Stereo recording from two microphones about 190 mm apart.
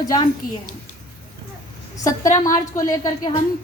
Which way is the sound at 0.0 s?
20° left (ahead or behind).